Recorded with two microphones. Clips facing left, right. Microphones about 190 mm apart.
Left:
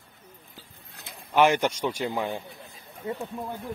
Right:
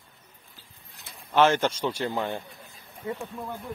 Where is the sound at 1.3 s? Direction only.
15° left (ahead or behind).